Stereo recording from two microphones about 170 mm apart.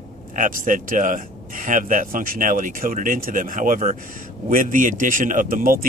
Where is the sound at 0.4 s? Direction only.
50° right (ahead or behind).